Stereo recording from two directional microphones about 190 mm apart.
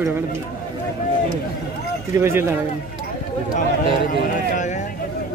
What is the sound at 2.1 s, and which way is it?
Speech, 15° right (ahead or behind).